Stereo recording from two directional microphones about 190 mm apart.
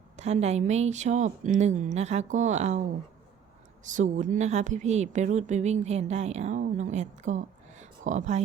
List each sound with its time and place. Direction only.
0.2 s speech: 35° right (ahead or behind)
3.8 s speech: 40° right (ahead or behind)